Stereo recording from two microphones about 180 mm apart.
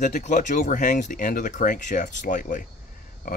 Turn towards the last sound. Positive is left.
turn(degrees=50)  # may be behind; listen again after turning